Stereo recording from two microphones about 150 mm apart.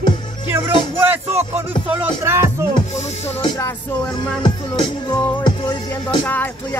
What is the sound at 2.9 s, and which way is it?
Music, 45° left (ahead or behind).